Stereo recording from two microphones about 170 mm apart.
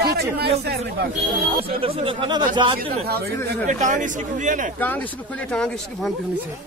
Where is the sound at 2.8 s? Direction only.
65° right (ahead or behind).